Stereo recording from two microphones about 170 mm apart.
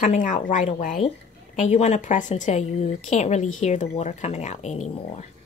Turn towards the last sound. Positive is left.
turn(degrees=40)  # may be behind; listen again after turning